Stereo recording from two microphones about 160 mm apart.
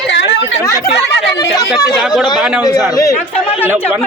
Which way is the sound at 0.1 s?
90° left.